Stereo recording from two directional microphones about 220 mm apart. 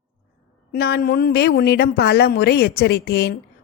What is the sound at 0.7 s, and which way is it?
A woman's voice, 45° left (ahead or behind).